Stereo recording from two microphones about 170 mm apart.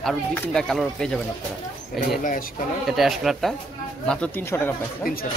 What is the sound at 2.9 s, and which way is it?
Speech, centre (ahead or behind).